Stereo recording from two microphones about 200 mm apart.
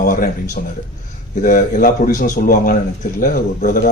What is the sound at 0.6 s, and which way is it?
Speech, 45° left (ahead or behind).